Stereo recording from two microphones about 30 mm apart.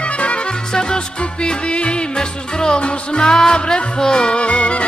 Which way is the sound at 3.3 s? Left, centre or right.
Left.